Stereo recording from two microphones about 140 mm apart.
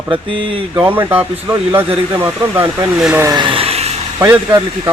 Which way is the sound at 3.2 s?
35° right (ahead or behind).